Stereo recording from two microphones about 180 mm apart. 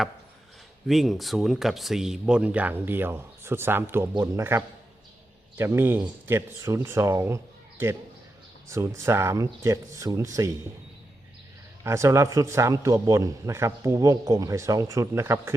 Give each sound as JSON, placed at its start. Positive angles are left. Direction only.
{"t": 0.9, "sound": "speech", "side_deg": 0}
{"t": 11.8, "sound": "speech", "side_deg": -15}